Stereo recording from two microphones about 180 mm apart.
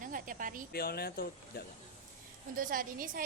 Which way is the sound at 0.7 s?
60° left (ahead or behind).